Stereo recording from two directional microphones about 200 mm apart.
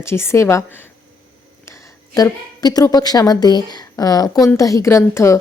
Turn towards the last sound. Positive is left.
turn(degrees=15)  # may be behind; listen again after turning